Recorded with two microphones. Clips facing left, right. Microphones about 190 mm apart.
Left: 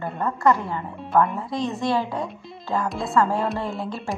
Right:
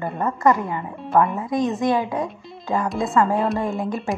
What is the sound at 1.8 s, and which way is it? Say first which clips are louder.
Speech: right 3 dB; 15° right (ahead or behind).